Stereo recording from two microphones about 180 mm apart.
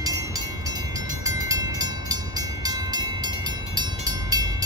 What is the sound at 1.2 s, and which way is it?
Train, 20° right (ahead or behind).